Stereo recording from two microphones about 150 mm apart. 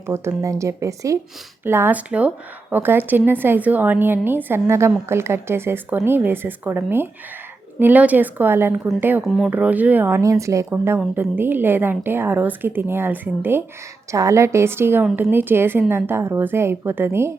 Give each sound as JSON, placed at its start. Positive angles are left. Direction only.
{"t": 0.0, "sound": "speech", "side_deg": -20}
{"t": 9.2, "sound": "speech", "side_deg": 0}